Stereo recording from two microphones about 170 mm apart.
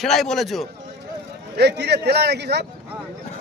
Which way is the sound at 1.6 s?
80° right.